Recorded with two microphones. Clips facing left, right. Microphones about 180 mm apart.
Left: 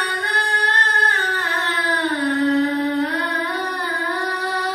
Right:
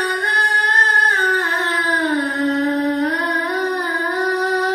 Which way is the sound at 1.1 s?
45° right (ahead or behind).